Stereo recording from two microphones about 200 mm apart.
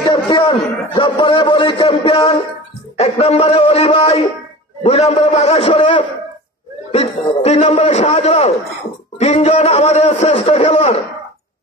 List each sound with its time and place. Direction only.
0.1 s a man's voice: 25° left (ahead or behind)